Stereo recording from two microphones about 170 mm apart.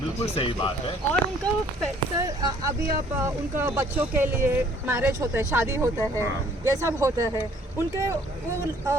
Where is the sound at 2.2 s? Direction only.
20° right (ahead or behind).